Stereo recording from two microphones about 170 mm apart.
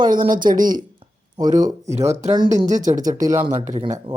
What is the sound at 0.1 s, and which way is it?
Speech, 55° right (ahead or behind).